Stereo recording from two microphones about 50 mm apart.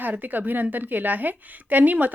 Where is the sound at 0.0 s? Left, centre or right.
Right.